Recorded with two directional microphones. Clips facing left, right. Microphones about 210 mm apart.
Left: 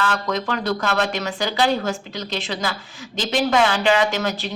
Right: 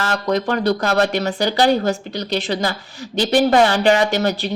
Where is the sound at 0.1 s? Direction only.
35° right (ahead or behind).